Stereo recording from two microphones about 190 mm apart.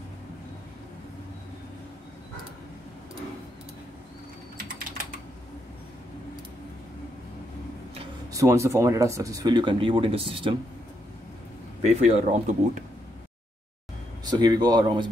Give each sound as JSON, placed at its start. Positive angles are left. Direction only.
{"t": 8.3, "sound": "speech", "side_deg": -15}
{"t": 11.8, "sound": "speech", "side_deg": -35}
{"t": 14.2, "sound": "speech", "side_deg": -20}